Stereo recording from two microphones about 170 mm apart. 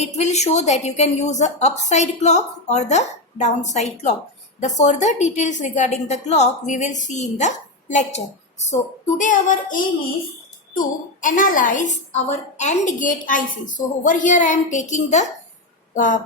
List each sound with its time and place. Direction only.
0.0 s a woman's voice: 40° left (ahead or behind)